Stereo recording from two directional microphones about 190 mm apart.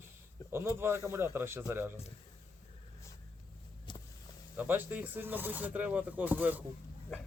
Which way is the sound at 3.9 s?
25° left (ahead or behind).